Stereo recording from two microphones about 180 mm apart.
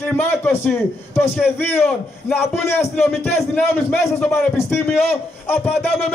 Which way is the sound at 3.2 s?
10° left (ahead or behind).